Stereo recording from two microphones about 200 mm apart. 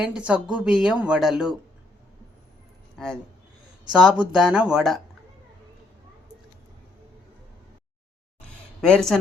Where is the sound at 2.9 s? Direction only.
5° left (ahead or behind).